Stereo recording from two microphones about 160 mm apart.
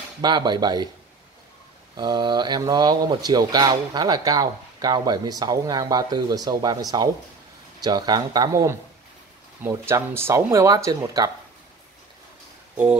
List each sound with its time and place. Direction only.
0.2 s speech: 30° right (ahead or behind)
2.0 s speech: 25° right (ahead or behind)